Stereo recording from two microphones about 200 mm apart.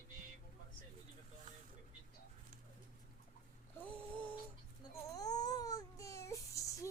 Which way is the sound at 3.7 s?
5° left (ahead or behind).